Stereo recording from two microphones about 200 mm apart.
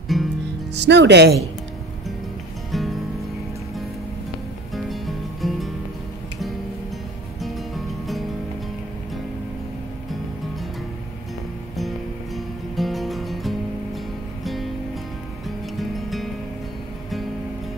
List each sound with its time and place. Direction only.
0.1 s music: centre (ahead or behind)
0.7 s speech: 60° right (ahead or behind)
2.7 s music: centre (ahead or behind)
4.7 s music: centre (ahead or behind)
7.3 s music: centre (ahead or behind)
12.4 s music: centre (ahead or behind)